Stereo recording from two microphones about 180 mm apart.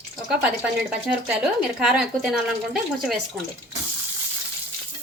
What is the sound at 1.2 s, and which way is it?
Speech, 5° right (ahead or behind).